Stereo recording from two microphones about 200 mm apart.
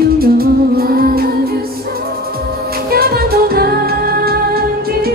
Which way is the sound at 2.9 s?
50° right (ahead or behind).